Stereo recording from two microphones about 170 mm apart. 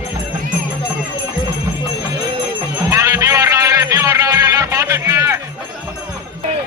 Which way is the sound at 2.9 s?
20° right (ahead or behind).